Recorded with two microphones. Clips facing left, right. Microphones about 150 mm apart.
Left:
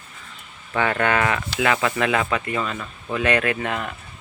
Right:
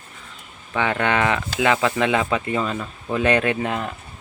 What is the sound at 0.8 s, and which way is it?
Speech, 15° right (ahead or behind).